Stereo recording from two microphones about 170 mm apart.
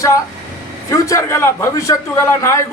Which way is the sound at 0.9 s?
20° left (ahead or behind).